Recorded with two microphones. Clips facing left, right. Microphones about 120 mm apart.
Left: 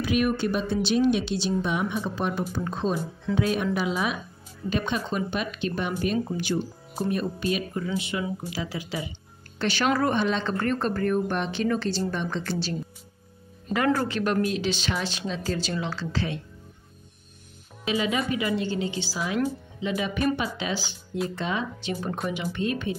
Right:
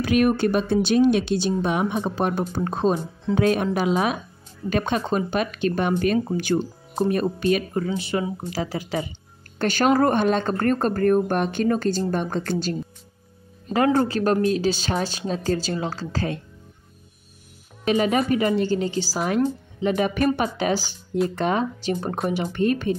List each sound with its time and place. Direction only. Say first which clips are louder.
0.0 s speech: right 5 dB; 50° right (ahead or behind)
7.9 s speech: right 4 dB; 35° right (ahead or behind)
14.0 s speech: right 5 dB; 40° right (ahead or behind)
17.8 s speech: right 6 dB; 50° right (ahead or behind)
19.1 s speech: right 5 dB; 55° right (ahead or behind)